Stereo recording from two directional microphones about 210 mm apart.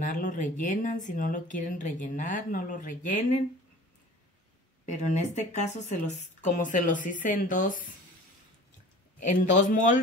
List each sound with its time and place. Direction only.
0.0 s speech: 40° left (ahead or behind)
4.8 s speech: 35° left (ahead or behind)
9.2 s speech: 35° left (ahead or behind)